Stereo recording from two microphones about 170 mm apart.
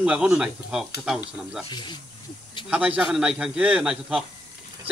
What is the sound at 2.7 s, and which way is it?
A man's voice, 5° right (ahead or behind).